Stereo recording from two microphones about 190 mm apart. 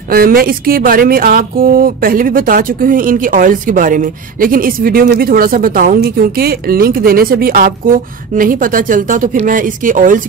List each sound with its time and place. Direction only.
0.1 s speech: 50° right (ahead or behind)